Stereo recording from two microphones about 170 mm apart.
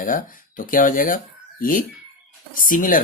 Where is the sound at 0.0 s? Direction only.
55° left (ahead or behind).